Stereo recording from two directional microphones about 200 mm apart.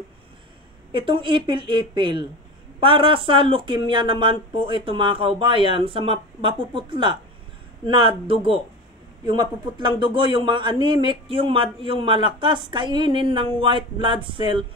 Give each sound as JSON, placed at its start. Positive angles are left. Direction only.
{"t": 0.9, "sound": "a man's voice", "side_deg": -25}